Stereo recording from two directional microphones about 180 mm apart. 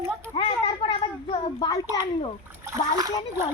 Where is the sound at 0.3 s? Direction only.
30° left (ahead or behind).